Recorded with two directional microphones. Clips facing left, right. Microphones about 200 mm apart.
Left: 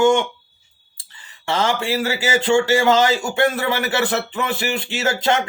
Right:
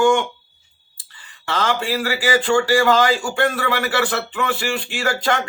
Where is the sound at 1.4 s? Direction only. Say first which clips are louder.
Left 1 dB; 25° left (ahead or behind).